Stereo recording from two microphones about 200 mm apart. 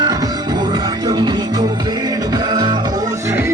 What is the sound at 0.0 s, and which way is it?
Music, 20° right (ahead or behind).